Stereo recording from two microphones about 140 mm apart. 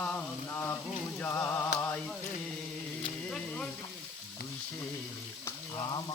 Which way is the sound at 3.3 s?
10° left (ahead or behind).